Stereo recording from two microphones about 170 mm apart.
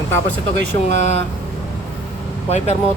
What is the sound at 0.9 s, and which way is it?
Speech, 45° left (ahead or behind).